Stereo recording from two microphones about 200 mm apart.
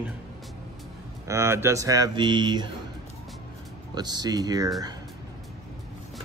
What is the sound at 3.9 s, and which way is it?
Speech, 20° right (ahead or behind).